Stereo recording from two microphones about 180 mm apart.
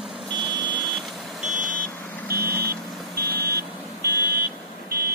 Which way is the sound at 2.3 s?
10° right (ahead or behind).